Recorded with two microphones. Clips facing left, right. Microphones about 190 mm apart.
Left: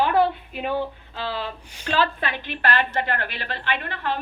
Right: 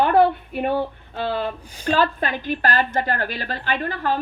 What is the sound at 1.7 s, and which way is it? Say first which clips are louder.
A woman's voice: right 3 dB; 40° right (ahead or behind).